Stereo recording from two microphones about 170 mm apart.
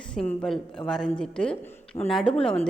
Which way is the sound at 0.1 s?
5° left (ahead or behind).